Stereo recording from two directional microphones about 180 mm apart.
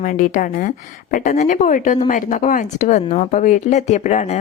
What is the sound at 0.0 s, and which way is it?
Speech, 45° left (ahead or behind).